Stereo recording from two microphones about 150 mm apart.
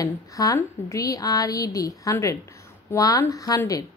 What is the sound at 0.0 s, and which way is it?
A woman's voice, 25° left (ahead or behind).